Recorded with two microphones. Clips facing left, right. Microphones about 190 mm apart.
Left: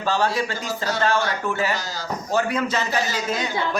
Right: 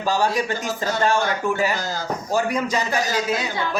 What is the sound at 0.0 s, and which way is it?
A man's voice, 10° right (ahead or behind).